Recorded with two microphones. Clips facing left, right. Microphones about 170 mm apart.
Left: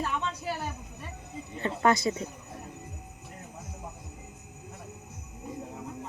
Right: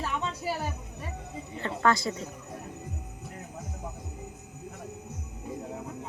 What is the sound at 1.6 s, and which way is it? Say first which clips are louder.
Speech: left 1 dB; 20° left (ahead or behind).